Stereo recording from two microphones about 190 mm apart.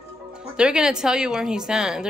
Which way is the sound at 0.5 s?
5° right (ahead or behind).